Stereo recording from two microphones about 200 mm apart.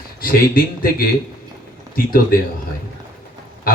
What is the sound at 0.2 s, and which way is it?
Speech, 45° left (ahead or behind).